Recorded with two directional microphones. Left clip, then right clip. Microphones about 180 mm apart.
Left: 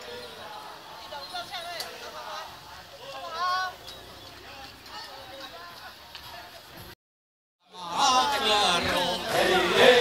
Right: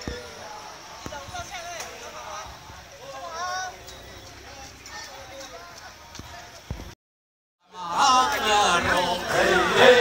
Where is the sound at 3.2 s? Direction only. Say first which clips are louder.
Left 3 dB; 60° right (ahead or behind).